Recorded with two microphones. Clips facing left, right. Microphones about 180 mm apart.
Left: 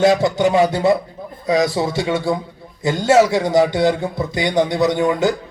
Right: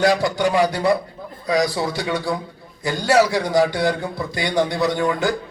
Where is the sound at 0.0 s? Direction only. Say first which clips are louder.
Left 4 dB; 20° left (ahead or behind).